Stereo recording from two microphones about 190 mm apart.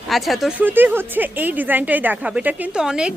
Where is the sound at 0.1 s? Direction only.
Centre (ahead or behind).